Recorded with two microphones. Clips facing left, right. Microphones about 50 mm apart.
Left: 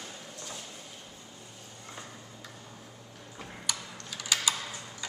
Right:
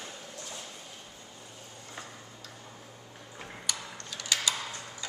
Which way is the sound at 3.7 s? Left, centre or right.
Centre.